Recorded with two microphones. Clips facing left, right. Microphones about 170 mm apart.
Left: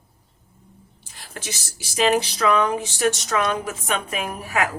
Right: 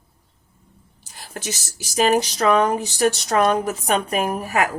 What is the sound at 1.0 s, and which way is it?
A woman's voice, 40° right (ahead or behind).